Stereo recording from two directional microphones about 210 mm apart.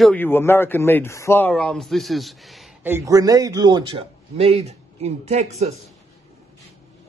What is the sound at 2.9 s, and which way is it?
A man's voice, 15° right (ahead or behind).